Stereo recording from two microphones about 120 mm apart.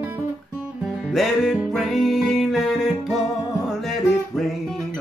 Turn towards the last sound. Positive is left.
turn(degrees=0)  # may be behind; listen again after turning